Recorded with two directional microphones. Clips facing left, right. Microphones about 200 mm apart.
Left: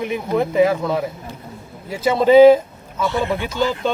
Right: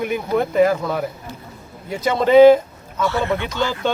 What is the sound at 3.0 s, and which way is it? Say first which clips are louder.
Speech: even; 15° left (ahead or behind).